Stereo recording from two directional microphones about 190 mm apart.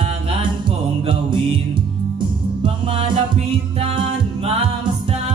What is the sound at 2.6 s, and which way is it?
Music, 25° right (ahead or behind).